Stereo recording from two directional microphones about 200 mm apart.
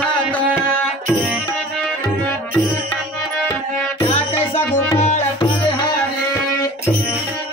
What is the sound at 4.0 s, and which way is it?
Music, 30° left (ahead or behind).